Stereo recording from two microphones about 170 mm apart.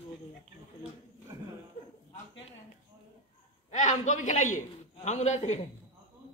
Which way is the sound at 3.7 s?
45° left (ahead or behind).